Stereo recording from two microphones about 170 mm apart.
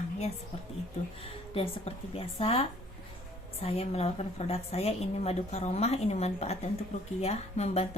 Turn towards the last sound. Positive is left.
turn(degrees=40)  # may be behind; listen again after turning